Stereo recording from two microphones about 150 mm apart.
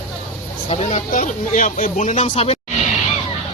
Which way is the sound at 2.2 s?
40° left (ahead or behind).